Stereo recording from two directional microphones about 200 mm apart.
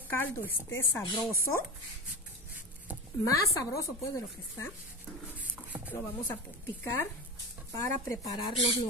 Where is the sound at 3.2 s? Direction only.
15° left (ahead or behind).